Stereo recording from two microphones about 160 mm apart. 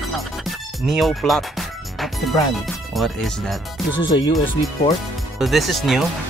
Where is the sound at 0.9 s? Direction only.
Centre (ahead or behind).